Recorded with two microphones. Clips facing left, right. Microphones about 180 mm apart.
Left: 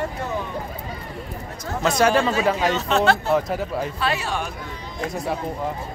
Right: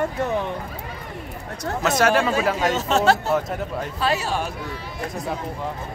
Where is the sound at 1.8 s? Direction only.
5° right (ahead or behind).